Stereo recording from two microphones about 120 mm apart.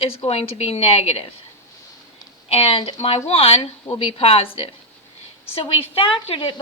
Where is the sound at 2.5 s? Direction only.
50° left (ahead or behind).